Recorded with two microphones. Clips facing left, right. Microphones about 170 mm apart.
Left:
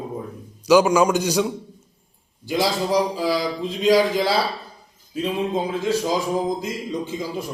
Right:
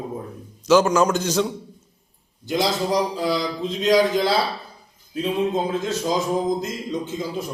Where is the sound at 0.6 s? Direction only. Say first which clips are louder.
Left 1 dB; 10° left (ahead or behind).